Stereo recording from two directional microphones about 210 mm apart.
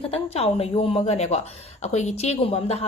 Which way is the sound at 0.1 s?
30° left (ahead or behind).